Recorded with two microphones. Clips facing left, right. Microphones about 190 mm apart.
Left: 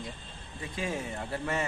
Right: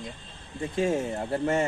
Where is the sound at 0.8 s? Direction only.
30° right (ahead or behind).